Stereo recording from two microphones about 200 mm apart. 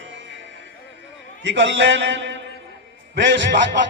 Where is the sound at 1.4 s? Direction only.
65° right (ahead or behind).